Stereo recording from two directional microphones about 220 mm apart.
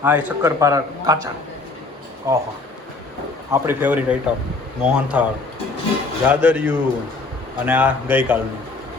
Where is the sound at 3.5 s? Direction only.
10° right (ahead or behind).